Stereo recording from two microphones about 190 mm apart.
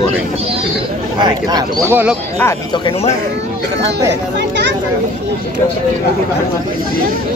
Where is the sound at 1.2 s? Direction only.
20° right (ahead or behind).